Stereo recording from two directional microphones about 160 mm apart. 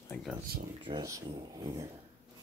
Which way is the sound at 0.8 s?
25° right (ahead or behind).